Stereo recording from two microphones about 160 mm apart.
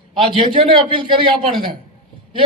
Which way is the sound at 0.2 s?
35° right (ahead or behind).